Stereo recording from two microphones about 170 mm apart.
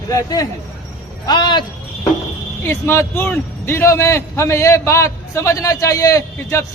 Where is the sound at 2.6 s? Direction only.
15° left (ahead or behind).